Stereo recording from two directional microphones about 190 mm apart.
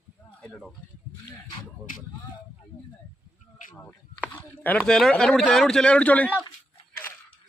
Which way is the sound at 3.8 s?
10° left (ahead or behind).